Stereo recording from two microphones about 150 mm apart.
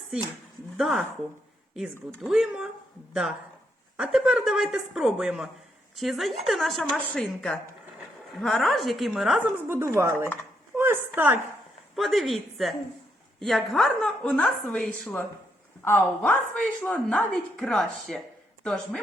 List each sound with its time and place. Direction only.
0.8 s a woman's voice: 5° right (ahead or behind)
2.2 s a woman's voice: 5° right (ahead or behind)
9.6 s a woman's voice: 15° right (ahead or behind)
11.9 s a woman's voice: centre (ahead or behind)